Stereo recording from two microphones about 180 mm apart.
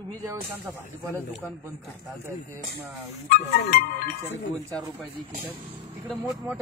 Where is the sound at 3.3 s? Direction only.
55° left (ahead or behind).